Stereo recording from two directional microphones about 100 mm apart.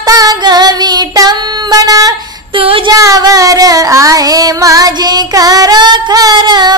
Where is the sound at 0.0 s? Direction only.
40° right (ahead or behind).